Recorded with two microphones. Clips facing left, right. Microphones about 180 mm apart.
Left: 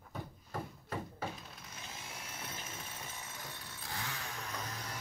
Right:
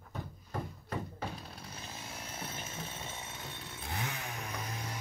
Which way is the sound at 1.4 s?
35° right (ahead or behind).